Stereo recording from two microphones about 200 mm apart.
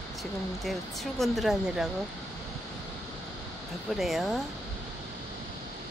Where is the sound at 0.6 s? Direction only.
Centre (ahead or behind).